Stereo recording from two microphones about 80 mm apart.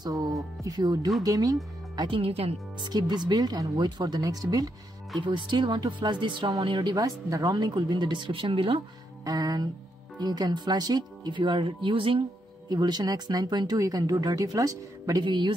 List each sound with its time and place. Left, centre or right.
0.0 s a woman's voice: right
2.8 s speech: right
5.2 s speech: right
6.6 s speech: right
9.2 s a woman's voice: right
12.6 s speech: right
13.7 s a woman's voice: right
15.2 s speech: right